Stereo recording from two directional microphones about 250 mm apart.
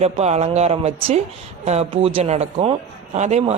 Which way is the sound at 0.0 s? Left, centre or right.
Right.